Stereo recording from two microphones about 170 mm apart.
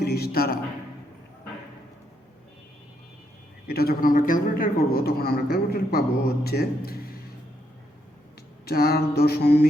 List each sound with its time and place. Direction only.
0.0 s a man's voice: 70° left (ahead or behind)
3.7 s a man's voice: 65° left (ahead or behind)
8.6 s a sound: 65° left (ahead or behind)